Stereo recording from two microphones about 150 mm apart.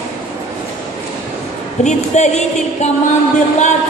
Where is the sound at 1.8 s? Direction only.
50° left (ahead or behind).